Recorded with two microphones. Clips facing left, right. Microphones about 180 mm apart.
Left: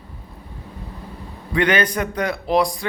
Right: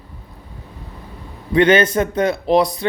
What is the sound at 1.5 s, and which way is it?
A man's voice, 25° right (ahead or behind).